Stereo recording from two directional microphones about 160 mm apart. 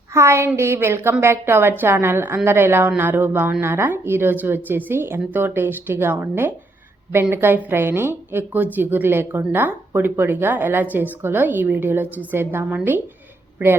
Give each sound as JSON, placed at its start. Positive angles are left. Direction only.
{"t": 0.1, "sound": "a woman's voice", "side_deg": -15}